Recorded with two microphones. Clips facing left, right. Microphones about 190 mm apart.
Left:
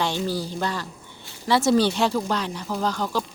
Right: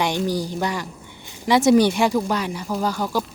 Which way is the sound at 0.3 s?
15° right (ahead or behind).